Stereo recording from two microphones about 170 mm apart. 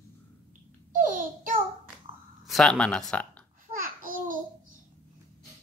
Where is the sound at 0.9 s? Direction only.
50° right (ahead or behind).